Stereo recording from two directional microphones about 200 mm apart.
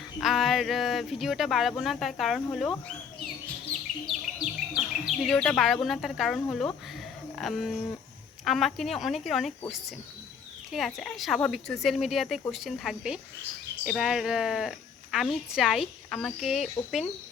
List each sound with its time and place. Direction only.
0.2 s a woman's voice: centre (ahead or behind)
3.7 s chirp: centre (ahead or behind)
7.3 s a woman's voice: centre (ahead or behind)